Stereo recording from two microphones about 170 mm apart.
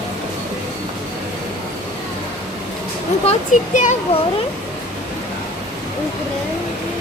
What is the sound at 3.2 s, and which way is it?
Speech, 40° left (ahead or behind).